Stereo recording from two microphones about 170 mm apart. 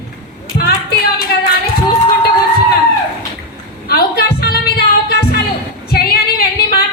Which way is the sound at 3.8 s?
65° left (ahead or behind).